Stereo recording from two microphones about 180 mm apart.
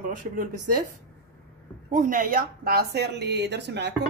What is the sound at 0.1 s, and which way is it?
Speech, 50° right (ahead or behind).